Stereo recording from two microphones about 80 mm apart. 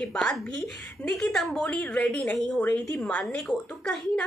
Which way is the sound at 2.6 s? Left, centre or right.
Centre.